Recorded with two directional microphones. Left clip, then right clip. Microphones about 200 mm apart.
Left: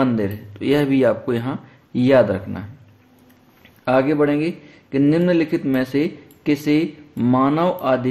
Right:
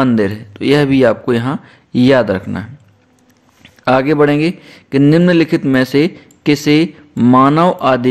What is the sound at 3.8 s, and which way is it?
A man's voice, 35° right (ahead or behind).